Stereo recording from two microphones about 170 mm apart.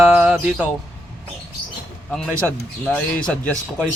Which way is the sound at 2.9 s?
5° left (ahead or behind).